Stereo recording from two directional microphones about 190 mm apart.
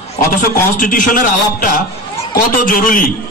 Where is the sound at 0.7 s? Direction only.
45° left (ahead or behind).